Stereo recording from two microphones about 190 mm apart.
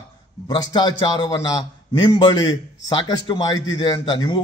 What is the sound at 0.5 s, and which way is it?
A man's voice, 20° left (ahead or behind).